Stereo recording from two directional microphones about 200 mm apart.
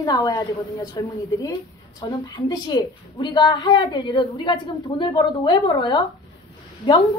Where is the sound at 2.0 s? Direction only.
20° left (ahead or behind).